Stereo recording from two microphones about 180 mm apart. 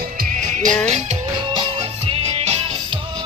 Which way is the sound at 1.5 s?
30° right (ahead or behind).